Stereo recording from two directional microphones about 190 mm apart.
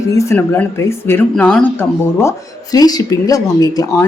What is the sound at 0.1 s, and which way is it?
A woman's voice, 15° left (ahead or behind).